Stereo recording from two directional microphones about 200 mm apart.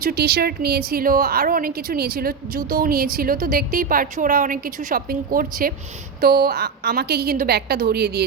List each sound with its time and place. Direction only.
0.0 s a woman's voice: 50° right (ahead or behind)